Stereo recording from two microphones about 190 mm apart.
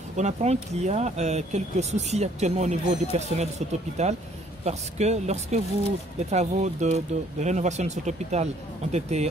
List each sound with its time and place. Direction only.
0.2 s speech: 35° right (ahead or behind)